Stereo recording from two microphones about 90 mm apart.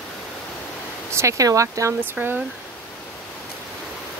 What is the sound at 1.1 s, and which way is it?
Speech, 35° right (ahead or behind).